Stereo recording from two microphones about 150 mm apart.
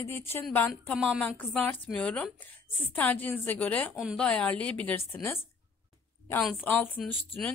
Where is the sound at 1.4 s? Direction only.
10° left (ahead or behind).